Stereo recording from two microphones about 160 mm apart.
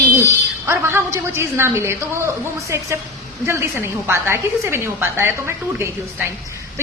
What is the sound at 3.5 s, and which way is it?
A woman's voice, 15° right (ahead or behind).